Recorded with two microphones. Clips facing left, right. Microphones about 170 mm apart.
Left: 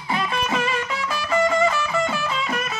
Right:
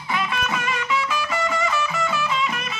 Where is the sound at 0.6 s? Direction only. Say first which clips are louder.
Even; 35° left (ahead or behind).